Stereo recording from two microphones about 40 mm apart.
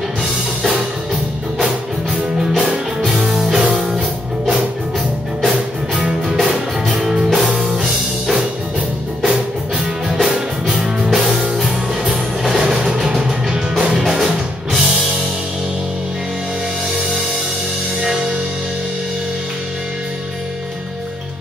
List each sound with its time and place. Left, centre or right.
3.5 s music: centre
6.2 s music: centre
10.2 s music: centre
12.4 s music: centre